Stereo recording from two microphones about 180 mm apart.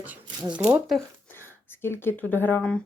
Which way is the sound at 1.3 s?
10° left (ahead or behind).